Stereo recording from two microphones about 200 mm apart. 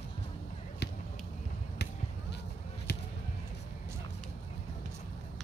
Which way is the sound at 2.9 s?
55° left (ahead or behind).